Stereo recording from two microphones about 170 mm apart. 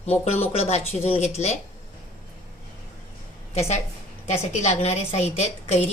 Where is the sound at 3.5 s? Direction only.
40° left (ahead or behind).